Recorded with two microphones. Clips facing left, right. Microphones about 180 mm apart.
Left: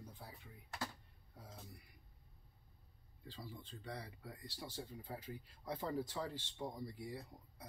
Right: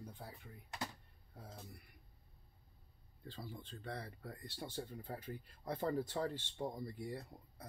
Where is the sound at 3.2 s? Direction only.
55° right (ahead or behind).